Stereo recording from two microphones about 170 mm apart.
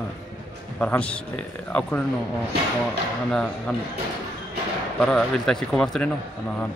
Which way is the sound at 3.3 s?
5° left (ahead or behind).